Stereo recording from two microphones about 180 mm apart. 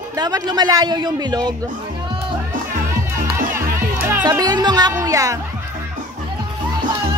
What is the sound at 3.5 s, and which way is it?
Music, 10° right (ahead or behind).